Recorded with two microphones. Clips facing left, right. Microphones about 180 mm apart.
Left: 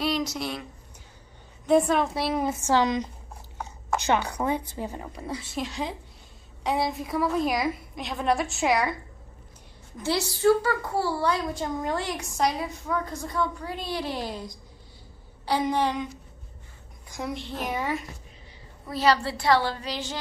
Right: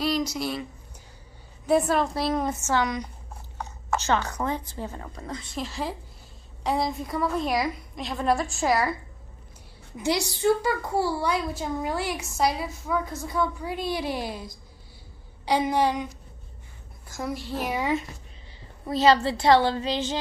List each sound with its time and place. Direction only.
0.0 s a woman's voice: centre (ahead or behind)
1.7 s a woman's voice: 5° right (ahead or behind)
2.6 s a woman's voice: 20° left (ahead or behind); by 8.9 s centre (ahead or behind)
9.9 s a woman's voice: 15° right (ahead or behind)
17.1 s a woman's voice: 5° right (ahead or behind)
18.9 s a woman's voice: 25° right (ahead or behind)